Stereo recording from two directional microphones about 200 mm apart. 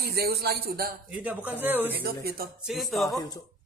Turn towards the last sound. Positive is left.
turn(degrees=20)  # may be behind; listen again after turning